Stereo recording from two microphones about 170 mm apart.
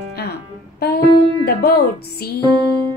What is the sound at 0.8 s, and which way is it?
Music, 65° left (ahead or behind).